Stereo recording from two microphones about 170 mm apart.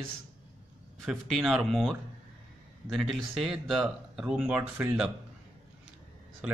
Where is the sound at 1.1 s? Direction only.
Centre (ahead or behind).